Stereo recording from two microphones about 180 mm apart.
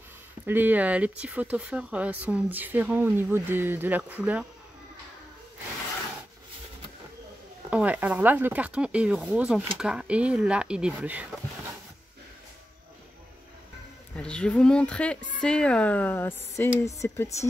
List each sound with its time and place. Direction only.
0.5 s speech: 10° right (ahead or behind)
7.7 s speech: 10° right (ahead or behind)
14.1 s speech: 5° left (ahead or behind)